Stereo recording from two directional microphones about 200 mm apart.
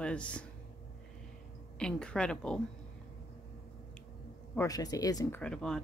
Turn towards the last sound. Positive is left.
turn(degrees=5)  # may be behind; listen again after turning